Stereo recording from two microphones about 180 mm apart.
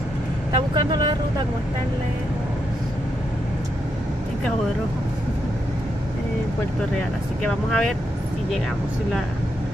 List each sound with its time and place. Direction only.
0.7 s vehicle: 25° right (ahead or behind)
7.4 s speech: 5° left (ahead or behind)